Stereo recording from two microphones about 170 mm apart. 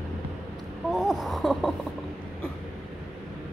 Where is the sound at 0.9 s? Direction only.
Centre (ahead or behind).